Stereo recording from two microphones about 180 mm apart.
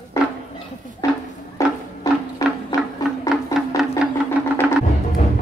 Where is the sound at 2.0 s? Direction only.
20° left (ahead or behind).